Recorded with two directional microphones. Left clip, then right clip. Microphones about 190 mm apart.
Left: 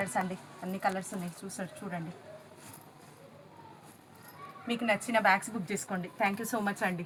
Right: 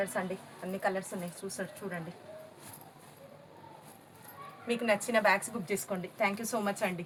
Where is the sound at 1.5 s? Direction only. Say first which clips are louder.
Right 2 dB; 20° right (ahead or behind).